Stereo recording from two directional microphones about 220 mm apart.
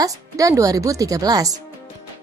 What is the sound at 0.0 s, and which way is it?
A woman's voice, 15° right (ahead or behind).